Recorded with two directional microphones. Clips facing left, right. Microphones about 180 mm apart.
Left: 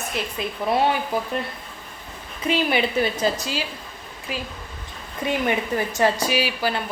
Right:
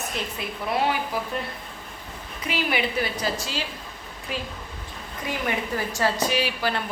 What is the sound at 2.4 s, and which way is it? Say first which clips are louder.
A woman's voice: left 5 dB; 25° left (ahead or behind).